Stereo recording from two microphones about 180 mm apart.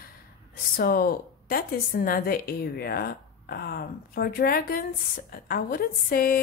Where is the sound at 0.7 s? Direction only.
55° left (ahead or behind).